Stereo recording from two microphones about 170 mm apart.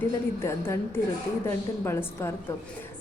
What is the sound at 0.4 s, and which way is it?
A woman's voice, 15° left (ahead or behind).